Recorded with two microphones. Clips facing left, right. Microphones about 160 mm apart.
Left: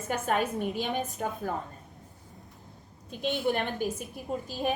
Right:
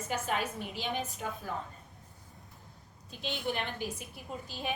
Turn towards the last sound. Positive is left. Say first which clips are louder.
# left 8 dB
turn(degrees=45)  # may be behind; listen again after turning